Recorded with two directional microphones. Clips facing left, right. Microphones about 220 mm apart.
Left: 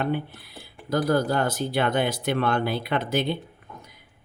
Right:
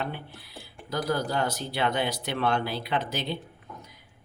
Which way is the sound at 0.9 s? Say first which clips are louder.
Left 6 dB; 50° left (ahead or behind).